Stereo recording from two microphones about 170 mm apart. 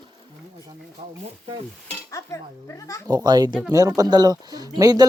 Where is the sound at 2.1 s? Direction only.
15° left (ahead or behind).